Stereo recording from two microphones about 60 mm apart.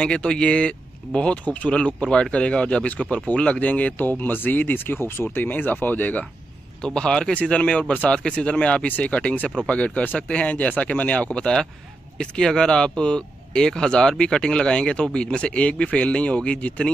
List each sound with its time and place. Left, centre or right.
0.0 s speech: centre
6.8 s speech: centre